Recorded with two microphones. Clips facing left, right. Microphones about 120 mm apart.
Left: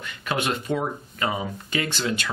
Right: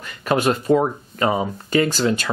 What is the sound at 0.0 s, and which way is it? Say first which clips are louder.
Speech: right 8 dB; 40° right (ahead or behind).